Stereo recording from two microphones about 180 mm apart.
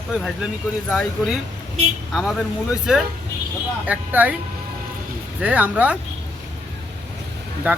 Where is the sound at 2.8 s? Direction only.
5° right (ahead or behind).